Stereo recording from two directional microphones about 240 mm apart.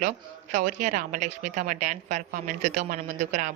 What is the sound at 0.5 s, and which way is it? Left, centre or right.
A woman's voice, right.